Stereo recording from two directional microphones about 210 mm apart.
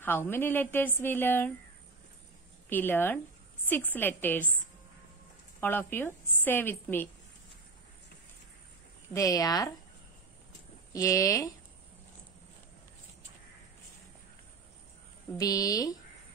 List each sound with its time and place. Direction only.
0.0 s speech: 10° left (ahead or behind)
2.7 s speech: 10° left (ahead or behind)
5.6 s speech: 10° left (ahead or behind)
9.1 s speech: 15° left (ahead or behind)
10.9 s speech: 15° left (ahead or behind)
15.3 s speech: 15° left (ahead or behind)